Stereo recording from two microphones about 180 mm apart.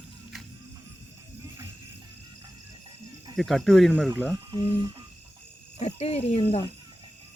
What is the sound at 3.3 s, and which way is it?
Speech, centre (ahead or behind).